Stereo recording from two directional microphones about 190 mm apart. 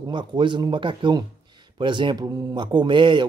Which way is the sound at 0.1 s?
25° right (ahead or behind).